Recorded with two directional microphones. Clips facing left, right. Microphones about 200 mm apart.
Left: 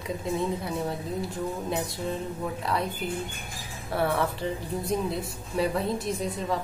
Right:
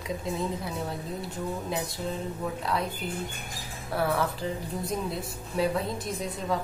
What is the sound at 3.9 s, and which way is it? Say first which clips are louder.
A woman's voice: left 1 dB; centre (ahead or behind).